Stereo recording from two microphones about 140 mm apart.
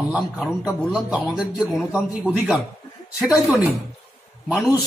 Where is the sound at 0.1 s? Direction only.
5° right (ahead or behind).